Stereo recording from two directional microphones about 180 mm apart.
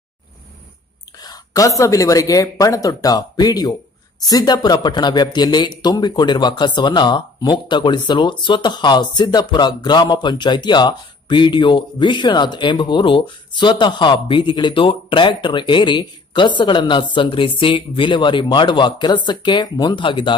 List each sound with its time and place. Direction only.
1.2 s speech: 20° left (ahead or behind)